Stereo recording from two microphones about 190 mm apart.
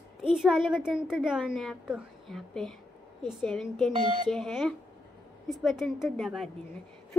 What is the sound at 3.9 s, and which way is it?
Speech, 25° right (ahead or behind).